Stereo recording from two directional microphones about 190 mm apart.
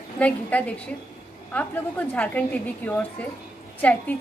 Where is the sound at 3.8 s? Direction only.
10° left (ahead or behind).